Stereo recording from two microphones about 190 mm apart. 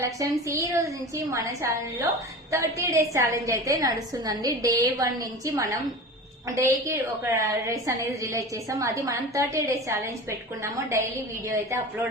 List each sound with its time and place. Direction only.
0.2 s a woman's voice: 15° right (ahead or behind)